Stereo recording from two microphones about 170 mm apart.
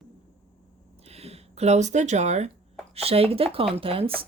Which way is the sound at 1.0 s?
35° right (ahead or behind).